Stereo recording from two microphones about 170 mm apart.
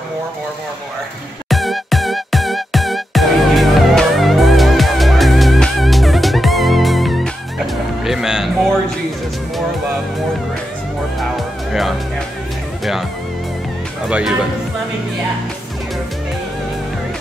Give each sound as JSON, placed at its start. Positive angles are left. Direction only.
{"t": 1.5, "sound": "music", "side_deg": 0}
{"t": 11.1, "sound": "music", "side_deg": 0}
{"t": 14.0, "sound": "music", "side_deg": -5}